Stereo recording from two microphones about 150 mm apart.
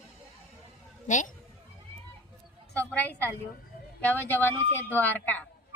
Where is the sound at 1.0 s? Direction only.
55° left (ahead or behind).